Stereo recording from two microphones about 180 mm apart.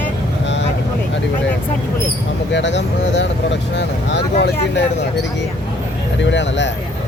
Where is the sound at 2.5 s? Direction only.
80° left.